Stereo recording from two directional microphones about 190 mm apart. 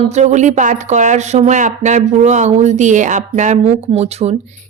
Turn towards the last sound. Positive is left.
turn(degrees=-35)  # may be behind; listen again after turning